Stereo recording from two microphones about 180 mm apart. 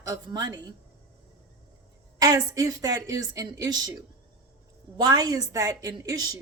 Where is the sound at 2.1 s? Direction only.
20° right (ahead or behind).